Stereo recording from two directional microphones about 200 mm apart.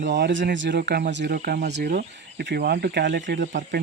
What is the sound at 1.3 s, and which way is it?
Speech, 45° right (ahead or behind).